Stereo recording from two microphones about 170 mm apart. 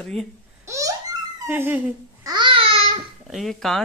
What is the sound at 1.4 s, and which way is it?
Speech, 10° right (ahead or behind).